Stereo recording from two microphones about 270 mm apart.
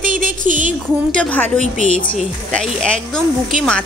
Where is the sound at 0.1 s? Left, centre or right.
Right.